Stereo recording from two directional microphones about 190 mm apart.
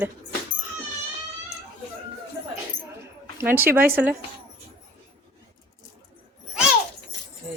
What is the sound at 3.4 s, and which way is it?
Speech, 10° right (ahead or behind).